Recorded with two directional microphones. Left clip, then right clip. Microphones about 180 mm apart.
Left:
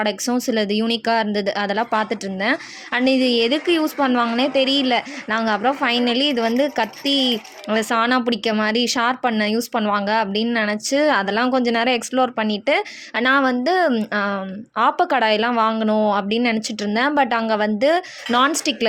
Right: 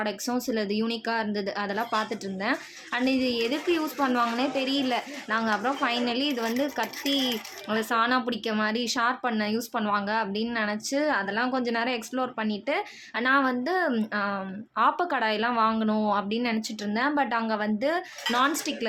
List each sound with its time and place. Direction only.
0.0 s speech: 50° left (ahead or behind)